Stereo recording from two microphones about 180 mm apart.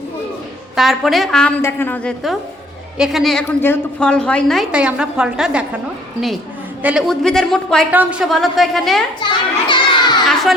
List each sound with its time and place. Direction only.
0.8 s a woman's voice: centre (ahead or behind)
6.8 s a woman's voice: centre (ahead or behind)
9.2 s children playing: 25° left (ahead or behind)